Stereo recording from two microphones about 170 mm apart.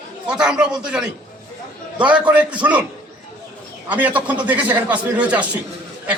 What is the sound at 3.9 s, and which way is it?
A man's voice, 10° right (ahead or behind).